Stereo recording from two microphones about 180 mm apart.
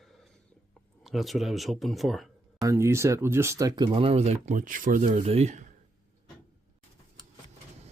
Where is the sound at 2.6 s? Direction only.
15° right (ahead or behind); by 5.7 s 40° right (ahead or behind).